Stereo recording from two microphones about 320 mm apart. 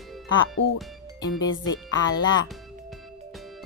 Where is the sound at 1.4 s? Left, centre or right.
Left.